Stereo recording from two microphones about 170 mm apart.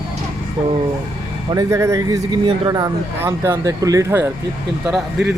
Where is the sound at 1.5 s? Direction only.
20° right (ahead or behind).